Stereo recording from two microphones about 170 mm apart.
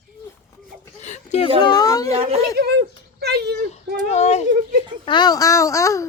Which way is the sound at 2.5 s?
75° right (ahead or behind).